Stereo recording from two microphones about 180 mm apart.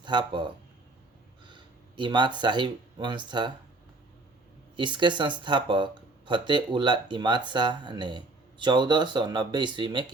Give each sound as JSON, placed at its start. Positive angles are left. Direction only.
{"t": 0.0, "sound": "speech", "side_deg": -25}
{"t": 4.8, "sound": "speech", "side_deg": -25}